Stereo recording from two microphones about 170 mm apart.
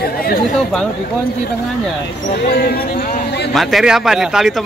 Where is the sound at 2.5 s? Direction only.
65° left (ahead or behind).